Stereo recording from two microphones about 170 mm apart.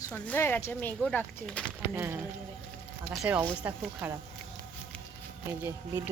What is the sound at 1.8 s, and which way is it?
Speech, 15° right (ahead or behind).